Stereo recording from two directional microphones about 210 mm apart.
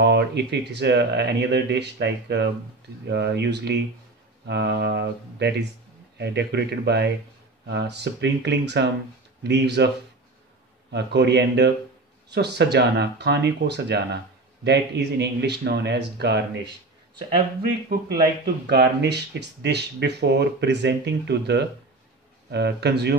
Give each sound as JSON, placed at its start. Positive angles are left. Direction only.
{"t": 0.0, "sound": "speech", "side_deg": -55}
{"t": 10.9, "sound": "speech", "side_deg": -55}
{"t": 18.2, "sound": "speech", "side_deg": -55}